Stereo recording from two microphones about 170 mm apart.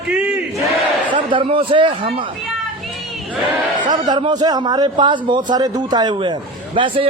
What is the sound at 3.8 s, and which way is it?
A man's voice, 25° right (ahead or behind).